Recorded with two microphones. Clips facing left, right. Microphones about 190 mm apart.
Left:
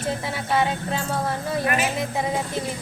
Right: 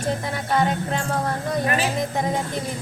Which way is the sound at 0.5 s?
5° left (ahead or behind).